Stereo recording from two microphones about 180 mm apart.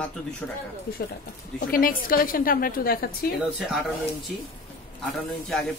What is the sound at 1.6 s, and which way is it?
Speech, 50° left (ahead or behind).